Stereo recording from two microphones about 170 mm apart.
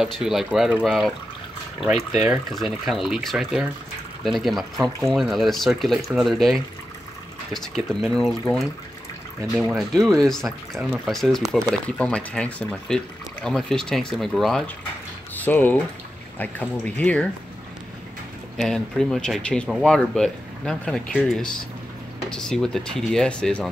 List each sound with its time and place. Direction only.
0.0 s speech: centre (ahead or behind)
18.6 s speech: 5° left (ahead or behind)